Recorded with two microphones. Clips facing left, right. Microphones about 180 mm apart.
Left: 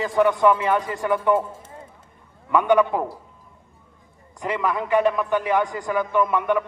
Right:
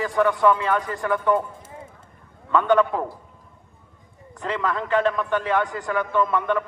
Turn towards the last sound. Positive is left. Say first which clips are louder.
# left 1 dB
turn(degrees=15)  # may be behind; listen again after turning